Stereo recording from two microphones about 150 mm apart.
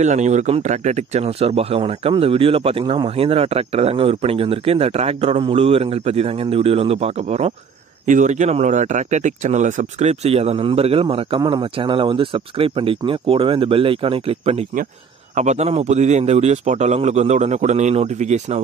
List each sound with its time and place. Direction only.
0.0 s a man's voice: 50° right (ahead or behind)